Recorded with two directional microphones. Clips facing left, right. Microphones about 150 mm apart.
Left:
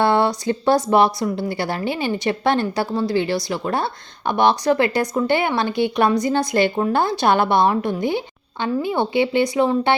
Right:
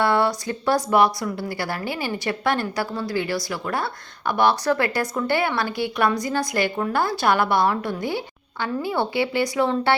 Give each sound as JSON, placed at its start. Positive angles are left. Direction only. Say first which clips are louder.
{"t": 0.0, "sound": "speech", "louder": "left 3 dB", "side_deg": 25}